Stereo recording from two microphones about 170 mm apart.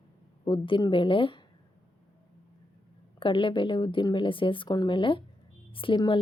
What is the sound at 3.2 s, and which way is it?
Speech, 30° left (ahead or behind).